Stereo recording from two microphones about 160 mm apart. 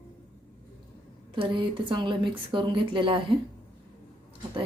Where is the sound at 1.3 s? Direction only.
30° right (ahead or behind).